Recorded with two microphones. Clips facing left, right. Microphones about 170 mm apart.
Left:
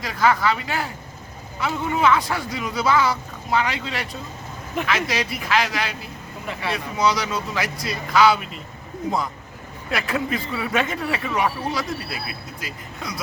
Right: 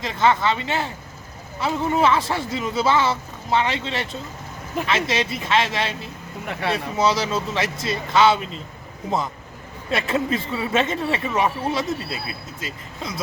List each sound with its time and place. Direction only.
0.0 s speech: 25° right (ahead or behind)
9.9 s speech: 25° right (ahead or behind)